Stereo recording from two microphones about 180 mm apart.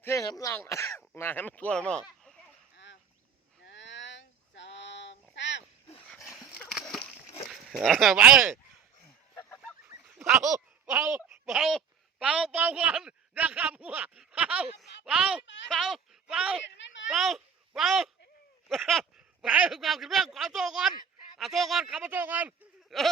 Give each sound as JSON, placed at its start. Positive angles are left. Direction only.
{"t": 0.0, "sound": "speech", "side_deg": 15}
{"t": 2.7, "sound": "duck", "side_deg": 80}
{"t": 3.6, "sound": "a sound", "side_deg": 85}
{"t": 6.1, "sound": "dog", "side_deg": 15}
{"t": 6.6, "sound": "a sound", "side_deg": 5}
{"t": 7.5, "sound": "speech", "side_deg": 0}
{"t": 11.0, "sound": "speech", "side_deg": -15}
{"t": 11.4, "sound": "a man's voice", "side_deg": 0}
{"t": 16.6, "sound": "a sound", "side_deg": 80}
{"t": 17.1, "sound": "speech", "side_deg": 0}